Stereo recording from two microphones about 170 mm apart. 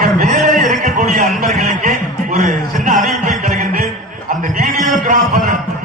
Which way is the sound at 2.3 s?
50° right (ahead or behind).